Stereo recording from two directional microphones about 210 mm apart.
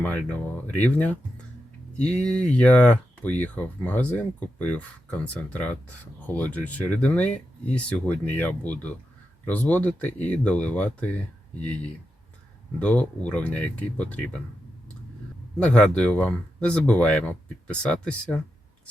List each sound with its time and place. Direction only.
0.0 s speech: 5° left (ahead or behind)
2.2 s speech: 5° left (ahead or behind)
15.5 s speech: 5° left (ahead or behind)